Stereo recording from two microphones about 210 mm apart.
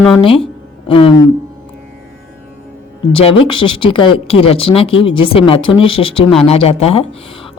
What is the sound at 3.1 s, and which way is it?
A woman's voice, 25° left (ahead or behind).